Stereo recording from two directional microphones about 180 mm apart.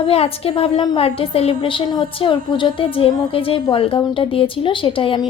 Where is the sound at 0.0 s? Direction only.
35° left (ahead or behind).